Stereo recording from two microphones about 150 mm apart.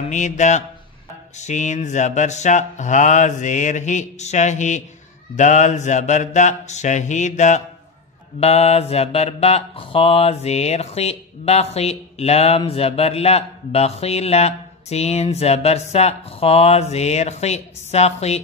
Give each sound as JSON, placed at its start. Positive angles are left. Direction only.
{"t": 0.1, "sound": "mantra", "side_deg": 55}